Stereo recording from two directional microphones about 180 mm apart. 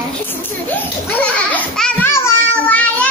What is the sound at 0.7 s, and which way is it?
Children playing, 10° left (ahead or behind).